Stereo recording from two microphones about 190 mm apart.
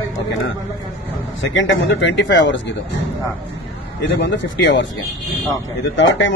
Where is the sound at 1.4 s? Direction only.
75° left (ahead or behind).